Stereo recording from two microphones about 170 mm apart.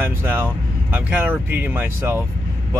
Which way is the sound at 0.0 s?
10° right (ahead or behind).